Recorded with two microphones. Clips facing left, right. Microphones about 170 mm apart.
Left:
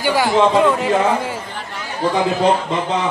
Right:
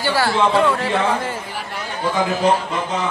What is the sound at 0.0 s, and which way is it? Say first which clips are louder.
Speech: left 3 dB; 15° left (ahead or behind).